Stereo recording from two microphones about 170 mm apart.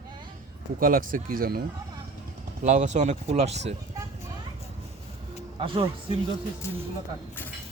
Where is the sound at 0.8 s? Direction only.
55° right (ahead or behind).